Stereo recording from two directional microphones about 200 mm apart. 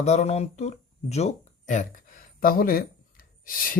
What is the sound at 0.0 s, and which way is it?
Speech, 35° left (ahead or behind).